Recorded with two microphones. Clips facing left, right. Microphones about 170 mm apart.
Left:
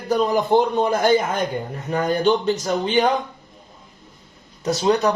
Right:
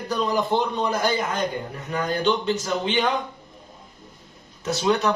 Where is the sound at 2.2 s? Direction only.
40° left (ahead or behind).